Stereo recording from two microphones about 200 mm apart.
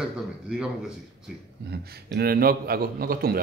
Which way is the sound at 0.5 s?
5° right (ahead or behind).